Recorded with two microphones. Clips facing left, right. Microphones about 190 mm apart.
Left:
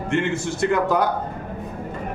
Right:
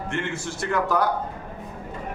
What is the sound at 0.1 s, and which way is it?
Speech, 20° left (ahead or behind).